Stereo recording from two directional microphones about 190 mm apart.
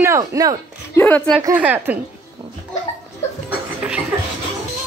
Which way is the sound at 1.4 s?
10° right (ahead or behind).